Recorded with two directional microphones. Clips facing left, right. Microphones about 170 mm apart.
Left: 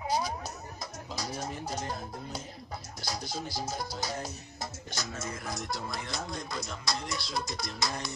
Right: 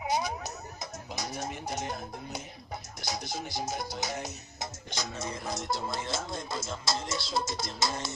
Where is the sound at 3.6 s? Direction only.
15° right (ahead or behind).